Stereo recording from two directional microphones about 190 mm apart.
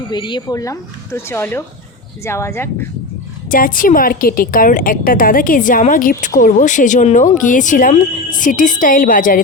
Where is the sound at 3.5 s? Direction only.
45° left (ahead or behind).